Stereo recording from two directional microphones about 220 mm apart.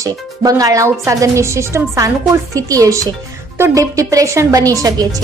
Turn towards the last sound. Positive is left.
turn(degrees=-15)  # may be behind; listen again after turning